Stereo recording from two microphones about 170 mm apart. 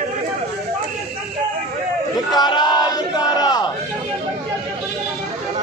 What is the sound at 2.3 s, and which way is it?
Battle cry, 25° left (ahead or behind).